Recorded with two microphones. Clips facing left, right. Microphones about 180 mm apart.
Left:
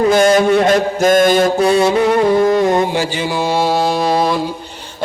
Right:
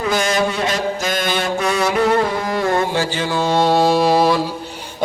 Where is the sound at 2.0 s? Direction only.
15° left (ahead or behind); by 4.4 s centre (ahead or behind).